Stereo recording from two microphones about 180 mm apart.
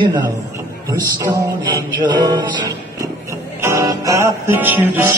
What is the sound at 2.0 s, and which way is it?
Music, 25° right (ahead or behind).